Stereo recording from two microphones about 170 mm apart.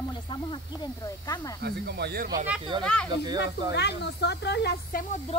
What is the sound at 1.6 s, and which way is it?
Speech, 75° right (ahead or behind).